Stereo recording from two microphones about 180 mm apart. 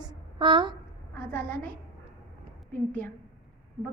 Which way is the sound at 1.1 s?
10° left (ahead or behind).